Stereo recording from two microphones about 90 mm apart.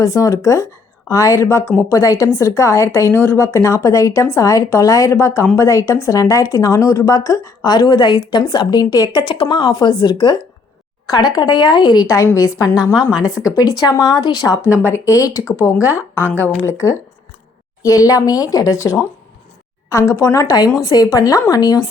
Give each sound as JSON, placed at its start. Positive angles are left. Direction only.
{"t": 0.0, "sound": "a woman's voice", "side_deg": 40}
{"t": 1.9, "sound": "a woman's voice", "side_deg": 40}
{"t": 5.1, "sound": "speech", "side_deg": 30}
{"t": 11.0, "sound": "a sound", "side_deg": 45}
{"t": 11.3, "sound": "speech", "side_deg": 55}
{"t": 12.0, "sound": "a woman's voice", "side_deg": 35}
{"t": 13.0, "sound": "speech", "side_deg": -5}
{"t": 13.4, "sound": "speech", "side_deg": 40}
{"t": 14.6, "sound": "a woman's voice", "side_deg": 25}